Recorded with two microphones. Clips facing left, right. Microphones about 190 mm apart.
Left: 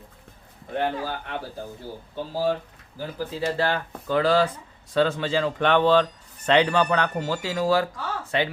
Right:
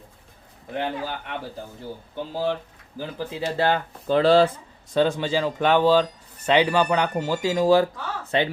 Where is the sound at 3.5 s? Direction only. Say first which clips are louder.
Right 5 dB; 20° right (ahead or behind).